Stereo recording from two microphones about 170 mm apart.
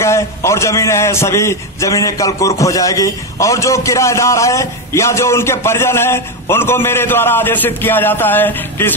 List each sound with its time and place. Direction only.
0.0 s a man's voice: 15° left (ahead or behind)